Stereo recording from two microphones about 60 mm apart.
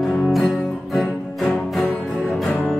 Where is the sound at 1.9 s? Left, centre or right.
Centre.